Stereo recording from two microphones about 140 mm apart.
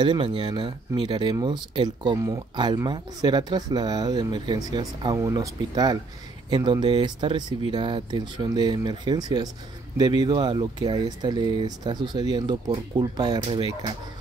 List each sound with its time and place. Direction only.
0.0 s speech: 35° right (ahead or behind)
2.1 s speech: 20° right (ahead or behind)
2.5 s speech: 30° right (ahead or behind)